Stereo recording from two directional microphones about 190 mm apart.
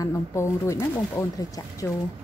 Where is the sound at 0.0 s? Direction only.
15° left (ahead or behind).